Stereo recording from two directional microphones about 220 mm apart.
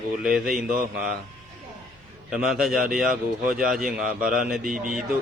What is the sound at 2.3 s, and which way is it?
Speech, centre (ahead or behind).